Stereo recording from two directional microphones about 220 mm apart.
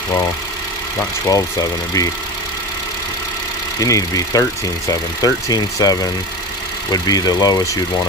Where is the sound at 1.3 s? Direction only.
15° left (ahead or behind).